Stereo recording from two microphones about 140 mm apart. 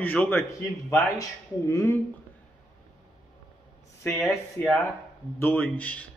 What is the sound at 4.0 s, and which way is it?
Speech, 20° left (ahead or behind).